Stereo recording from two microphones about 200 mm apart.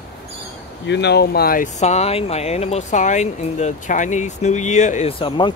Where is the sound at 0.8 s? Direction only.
60° left (ahead or behind).